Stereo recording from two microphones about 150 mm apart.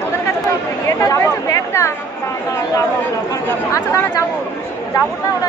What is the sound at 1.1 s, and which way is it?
Chatter, 20° left (ahead or behind).